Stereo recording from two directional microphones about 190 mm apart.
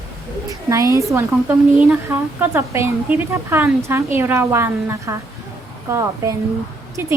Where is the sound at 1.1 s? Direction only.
10° right (ahead or behind).